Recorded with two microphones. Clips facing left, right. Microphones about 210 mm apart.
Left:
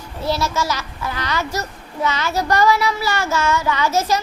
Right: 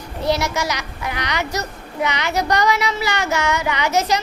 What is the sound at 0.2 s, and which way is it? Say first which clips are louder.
A woman's voice: right 1 dB; 15° right (ahead or behind).